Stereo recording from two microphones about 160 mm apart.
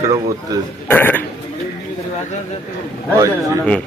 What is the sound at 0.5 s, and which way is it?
Speech, 20° right (ahead or behind).